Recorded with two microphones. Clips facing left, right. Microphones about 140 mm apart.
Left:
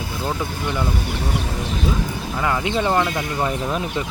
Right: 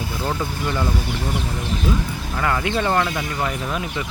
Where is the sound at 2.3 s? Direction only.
15° left (ahead or behind).